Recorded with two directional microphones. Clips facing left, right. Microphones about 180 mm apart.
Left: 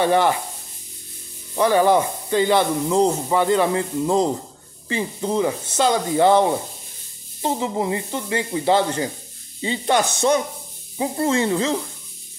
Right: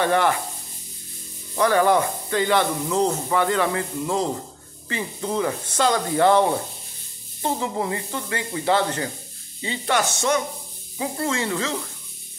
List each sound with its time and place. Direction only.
0.0 s speech: 20° left (ahead or behind)
1.5 s speech: 20° left (ahead or behind)
7.4 s speech: 20° left (ahead or behind)